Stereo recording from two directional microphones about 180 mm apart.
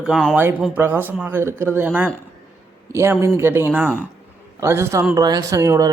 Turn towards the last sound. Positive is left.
turn(degrees=-20)  # may be behind; listen again after turning